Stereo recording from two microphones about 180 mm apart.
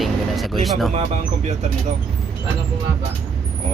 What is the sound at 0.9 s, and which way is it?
Speech, 40° right (ahead or behind).